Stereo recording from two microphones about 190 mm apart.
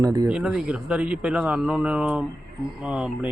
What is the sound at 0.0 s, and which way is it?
Speech, 20° right (ahead or behind).